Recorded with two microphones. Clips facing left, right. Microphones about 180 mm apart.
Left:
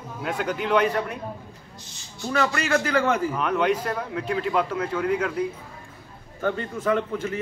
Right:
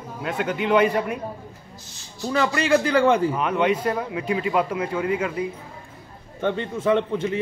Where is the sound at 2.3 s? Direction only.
30° right (ahead or behind).